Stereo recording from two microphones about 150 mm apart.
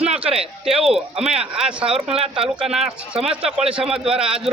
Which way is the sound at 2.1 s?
40° right (ahead or behind).